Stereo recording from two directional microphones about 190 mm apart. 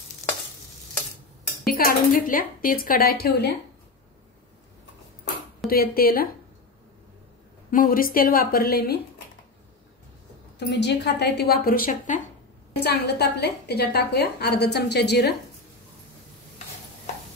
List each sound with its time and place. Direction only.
1.7 s speech: 50° left (ahead or behind)
5.7 s speech: 50° left (ahead or behind)
7.7 s speech: 50° left (ahead or behind)
10.6 s a woman's voice: 65° left (ahead or behind); by 12.2 s 45° left (ahead or behind)
12.8 s a woman's voice: 60° left (ahead or behind)